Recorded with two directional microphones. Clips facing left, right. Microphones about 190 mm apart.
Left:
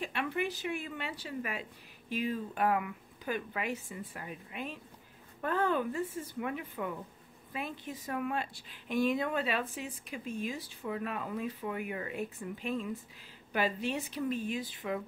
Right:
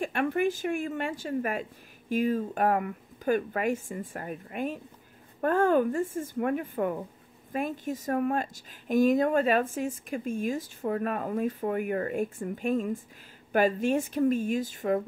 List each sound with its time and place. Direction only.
0.0 s a woman's voice: 50° right (ahead or behind)